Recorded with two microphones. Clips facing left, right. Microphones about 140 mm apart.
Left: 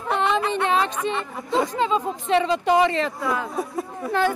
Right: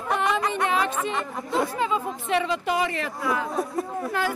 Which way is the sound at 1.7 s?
20° left (ahead or behind).